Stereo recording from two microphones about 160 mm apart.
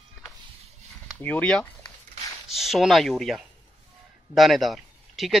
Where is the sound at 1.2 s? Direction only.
10° left (ahead or behind).